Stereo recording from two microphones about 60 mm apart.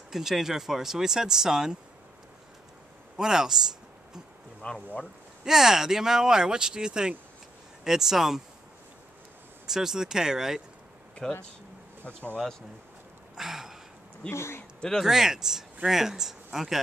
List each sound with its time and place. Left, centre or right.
0.1 s speech: centre
3.2 s speech: centre
4.6 s speech: centre
5.4 s speech: centre
9.7 s speech: centre
11.2 s speech: centre
13.4 s a sound: centre
14.3 s speech: left
14.8 s speech: centre
15.0 s speech: centre